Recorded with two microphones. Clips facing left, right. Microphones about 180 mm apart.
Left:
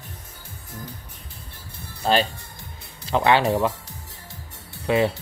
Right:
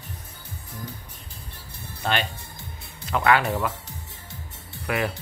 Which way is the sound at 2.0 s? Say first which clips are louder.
Left 6 dB; 35° left (ahead or behind).